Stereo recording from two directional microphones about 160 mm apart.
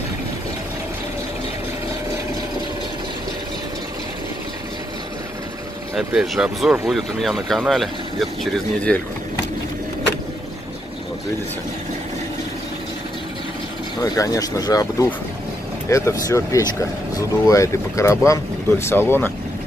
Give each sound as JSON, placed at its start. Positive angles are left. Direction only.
{"t": 5.9, "sound": "speech", "side_deg": -5}
{"t": 14.0, "sound": "speech", "side_deg": 20}